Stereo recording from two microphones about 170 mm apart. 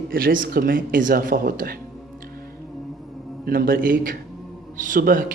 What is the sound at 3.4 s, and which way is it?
A man's voice, 60° right (ahead or behind).